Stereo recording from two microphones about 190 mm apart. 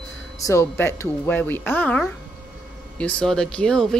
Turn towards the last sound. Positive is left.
turn(degrees=5)  # may be behind; listen again after turning